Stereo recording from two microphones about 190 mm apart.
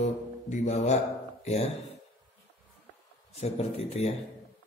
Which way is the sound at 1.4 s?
35° left (ahead or behind).